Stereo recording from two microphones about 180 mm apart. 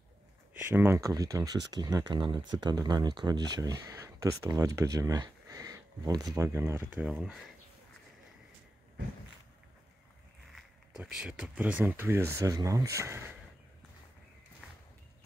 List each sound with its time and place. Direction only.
0.6 s speech: 10° right (ahead or behind)
10.5 s speech: 5° right (ahead or behind)